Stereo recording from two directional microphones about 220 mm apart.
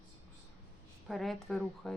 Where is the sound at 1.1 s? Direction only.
Centre (ahead or behind).